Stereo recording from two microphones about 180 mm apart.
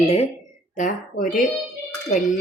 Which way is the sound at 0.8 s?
45° left (ahead or behind).